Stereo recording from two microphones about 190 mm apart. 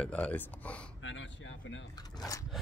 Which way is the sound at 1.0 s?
80° left.